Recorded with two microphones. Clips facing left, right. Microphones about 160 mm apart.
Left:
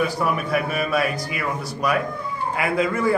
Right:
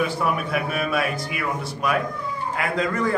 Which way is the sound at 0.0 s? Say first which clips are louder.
Left 1 dB; centre (ahead or behind).